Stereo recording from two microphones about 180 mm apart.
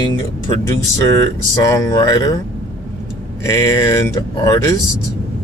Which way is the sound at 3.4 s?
15° left (ahead or behind).